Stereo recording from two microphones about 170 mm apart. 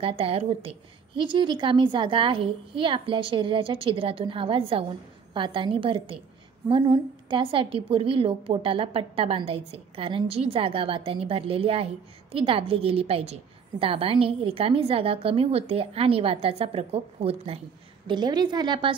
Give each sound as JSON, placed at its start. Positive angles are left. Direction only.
{"t": 0.0, "sound": "a woman's voice", "side_deg": -35}